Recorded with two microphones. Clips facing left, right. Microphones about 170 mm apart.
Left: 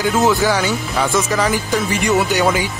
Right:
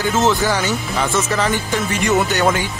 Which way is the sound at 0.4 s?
10° left (ahead or behind).